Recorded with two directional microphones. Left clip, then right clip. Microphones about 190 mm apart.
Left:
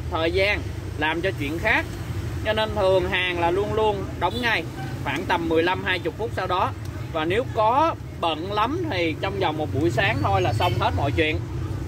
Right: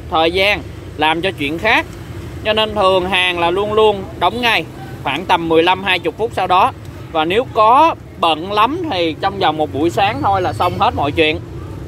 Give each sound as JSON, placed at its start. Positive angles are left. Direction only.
{"t": 0.1, "sound": "speech", "side_deg": -40}